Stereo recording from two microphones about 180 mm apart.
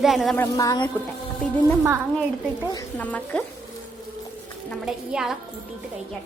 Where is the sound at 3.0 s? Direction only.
10° left (ahead or behind).